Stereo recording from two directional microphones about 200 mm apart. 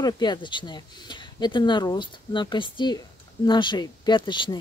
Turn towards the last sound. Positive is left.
turn(degrees=25)  # may be behind; listen again after turning